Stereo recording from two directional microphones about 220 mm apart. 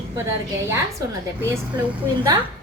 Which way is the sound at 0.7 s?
10° right (ahead or behind).